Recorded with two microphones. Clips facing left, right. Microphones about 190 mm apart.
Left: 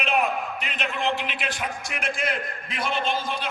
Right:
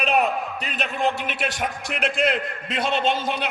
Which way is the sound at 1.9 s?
70° right (ahead or behind).